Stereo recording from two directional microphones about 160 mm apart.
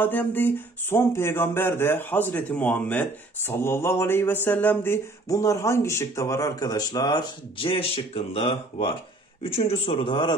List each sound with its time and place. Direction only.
0.0 s speech: 10° left (ahead or behind); by 10.3 s 30° left (ahead or behind)